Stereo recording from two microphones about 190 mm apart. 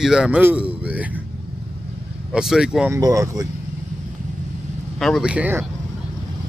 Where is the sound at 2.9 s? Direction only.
20° right (ahead or behind).